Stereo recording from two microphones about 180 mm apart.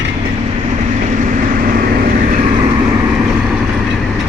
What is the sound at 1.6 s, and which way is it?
Vehicle, 55° right (ahead or behind).